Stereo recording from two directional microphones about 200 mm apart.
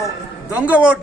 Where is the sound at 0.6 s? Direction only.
5° right (ahead or behind).